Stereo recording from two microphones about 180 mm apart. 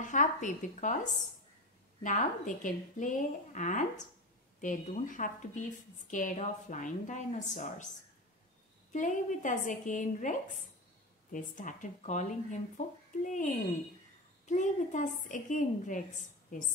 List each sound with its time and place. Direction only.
0.0 s a woman's voice: 45° left (ahead or behind)
8.9 s a woman's voice: 45° left (ahead or behind)
11.3 s a woman's voice: 45° left (ahead or behind)